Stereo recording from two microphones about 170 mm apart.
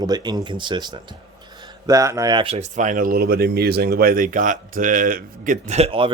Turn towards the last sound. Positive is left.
turn(degrees=-30)  # may be behind; listen again after turning